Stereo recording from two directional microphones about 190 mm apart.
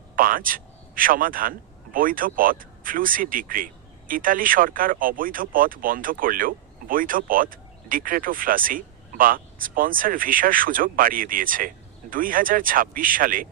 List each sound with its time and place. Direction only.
0.2 s a man's voice: 45° right (ahead or behind)